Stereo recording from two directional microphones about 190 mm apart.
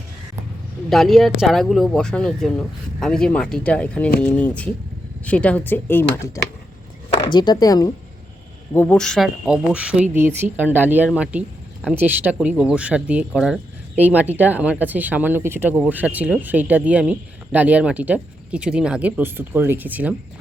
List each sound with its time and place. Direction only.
0.9 s speech: centre (ahead or behind); by 7.9 s 20° left (ahead or behind)
8.7 s speech: 10° left (ahead or behind); by 20.1 s 10° right (ahead or behind)